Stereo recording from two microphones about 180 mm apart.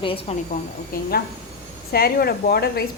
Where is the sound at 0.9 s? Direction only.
55° left (ahead or behind).